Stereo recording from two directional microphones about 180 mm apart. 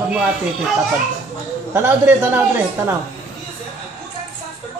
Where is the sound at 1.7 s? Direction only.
10° right (ahead or behind).